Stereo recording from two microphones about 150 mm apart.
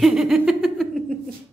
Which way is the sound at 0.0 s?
Centre (ahead or behind).